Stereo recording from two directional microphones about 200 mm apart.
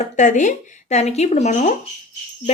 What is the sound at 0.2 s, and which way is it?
Speech, 40° left (ahead or behind).